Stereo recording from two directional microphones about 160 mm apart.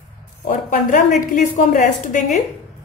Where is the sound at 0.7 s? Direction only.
55° left (ahead or behind).